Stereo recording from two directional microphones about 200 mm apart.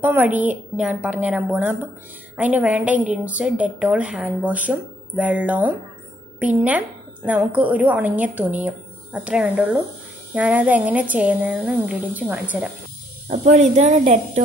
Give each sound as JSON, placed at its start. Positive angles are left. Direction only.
{"t": 0.0, "sound": "speech", "side_deg": -10}
{"t": 13.3, "sound": "speech", "side_deg": -35}